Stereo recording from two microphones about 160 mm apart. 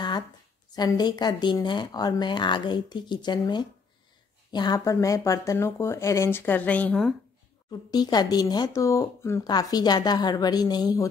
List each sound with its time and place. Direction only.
0.7 s speech: 25° left (ahead or behind); by 7.2 s 5° left (ahead or behind)
7.9 s speech: 25° left (ahead or behind)